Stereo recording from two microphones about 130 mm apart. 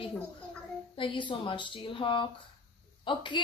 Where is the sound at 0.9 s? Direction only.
40° left (ahead or behind).